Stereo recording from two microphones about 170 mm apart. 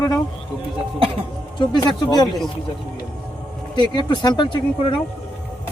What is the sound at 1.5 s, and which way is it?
Speech, 25° left (ahead or behind).